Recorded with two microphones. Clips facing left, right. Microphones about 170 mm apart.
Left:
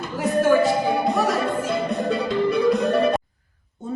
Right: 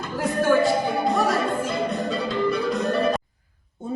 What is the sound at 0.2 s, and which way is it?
Music, centre (ahead or behind).